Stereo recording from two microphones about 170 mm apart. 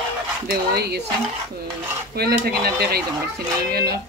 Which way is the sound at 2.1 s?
70° right (ahead or behind).